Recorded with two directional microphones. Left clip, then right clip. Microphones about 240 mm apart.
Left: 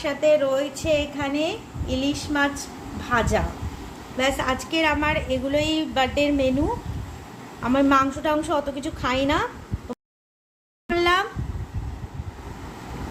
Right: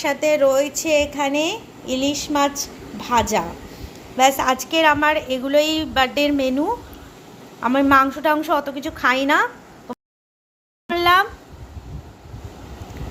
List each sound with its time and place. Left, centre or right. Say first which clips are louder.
0.0 s a woman's voice: right 3 dB; right
7.6 s a woman's voice: right 4 dB; centre
10.8 s a sound: right 5 dB; centre